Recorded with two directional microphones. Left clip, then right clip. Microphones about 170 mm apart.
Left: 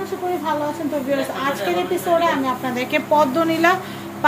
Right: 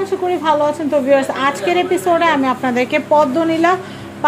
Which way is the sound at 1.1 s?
50° right (ahead or behind).